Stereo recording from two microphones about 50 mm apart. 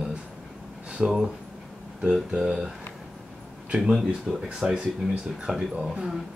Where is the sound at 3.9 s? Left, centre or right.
Centre.